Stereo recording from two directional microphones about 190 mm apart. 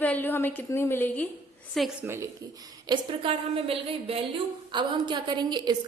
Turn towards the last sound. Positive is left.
turn(degrees=-25)  # may be behind; listen again after turning